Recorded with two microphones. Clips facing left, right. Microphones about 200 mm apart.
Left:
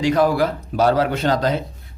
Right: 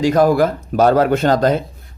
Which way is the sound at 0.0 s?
45° right (ahead or behind).